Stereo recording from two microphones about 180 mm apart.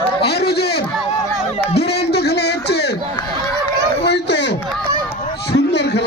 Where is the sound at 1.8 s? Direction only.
65° left (ahead or behind).